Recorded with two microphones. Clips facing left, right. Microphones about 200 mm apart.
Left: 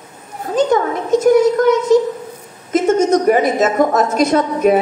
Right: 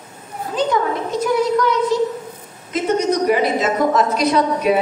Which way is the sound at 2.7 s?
45° left (ahead or behind).